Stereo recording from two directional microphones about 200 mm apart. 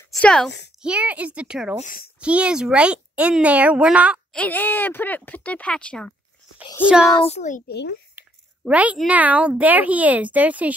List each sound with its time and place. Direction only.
0.1 s a child's voice: 5° left (ahead or behind)
4.4 s speech: 10° left (ahead or behind)
7.2 s a child's voice: 30° left (ahead or behind)
7.6 s a child's voice: 55° left (ahead or behind)
8.2 s a child's voice: 5° right (ahead or behind)